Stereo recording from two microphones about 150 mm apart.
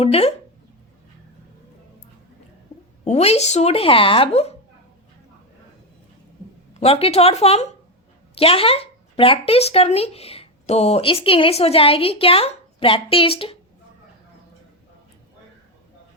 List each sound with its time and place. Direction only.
0.0 s speech: 40° left (ahead or behind)
3.0 s speech: 45° left (ahead or behind)
6.7 s speech: 40° left (ahead or behind)